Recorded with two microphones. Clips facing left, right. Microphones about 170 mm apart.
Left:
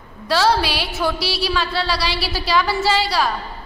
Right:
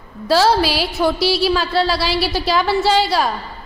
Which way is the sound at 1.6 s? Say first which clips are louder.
Right 4 dB; centre (ahead or behind).